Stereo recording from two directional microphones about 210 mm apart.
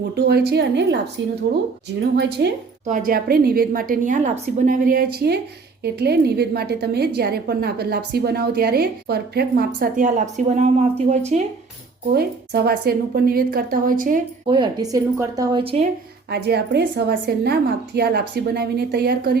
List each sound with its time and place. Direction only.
0.2 s a woman's voice: 50° right (ahead or behind)
2.8 s a woman's voice: 40° right (ahead or behind)
12.1 s a woman's voice: 50° right (ahead or behind)
14.4 s a woman's voice: 20° right (ahead or behind)
16.3 s a woman's voice: 50° right (ahead or behind)